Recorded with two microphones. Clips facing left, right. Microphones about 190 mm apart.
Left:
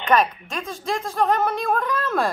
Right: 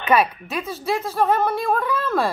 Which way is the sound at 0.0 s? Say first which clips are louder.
Right 1 dB; 10° right (ahead or behind).